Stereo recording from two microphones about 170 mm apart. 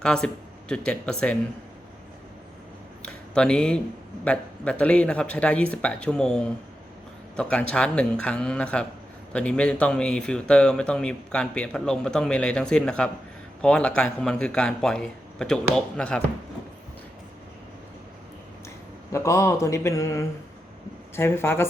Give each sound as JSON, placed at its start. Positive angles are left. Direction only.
{"t": 0.0, "sound": "speech", "side_deg": 5}
{"t": 3.0, "sound": "a sound", "side_deg": 5}
{"t": 4.2, "sound": "speech", "side_deg": 5}
{"t": 19.1, "sound": "speech", "side_deg": 15}